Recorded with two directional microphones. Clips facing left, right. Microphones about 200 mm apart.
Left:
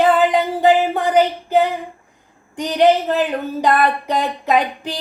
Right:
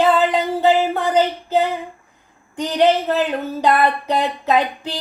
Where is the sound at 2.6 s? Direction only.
15° left (ahead or behind).